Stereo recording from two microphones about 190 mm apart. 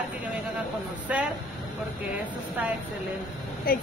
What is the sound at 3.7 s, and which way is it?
Speech, 50° left (ahead or behind).